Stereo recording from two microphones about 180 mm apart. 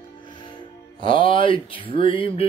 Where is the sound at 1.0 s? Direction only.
30° left (ahead or behind).